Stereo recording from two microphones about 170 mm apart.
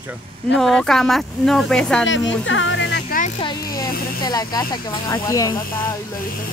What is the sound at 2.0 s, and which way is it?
Speech, 90° left.